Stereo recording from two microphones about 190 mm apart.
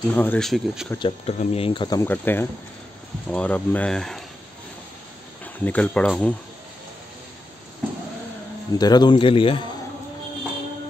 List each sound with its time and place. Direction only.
0.1 s speech: 10° left (ahead or behind)
0.9 s cricket: 25° left (ahead or behind); by 2.4 s 10° left (ahead or behind)
3.3 s speech: 5° left (ahead or behind)
5.4 s speech: 10° left (ahead or behind)
8.7 s cricket: 20° left (ahead or behind)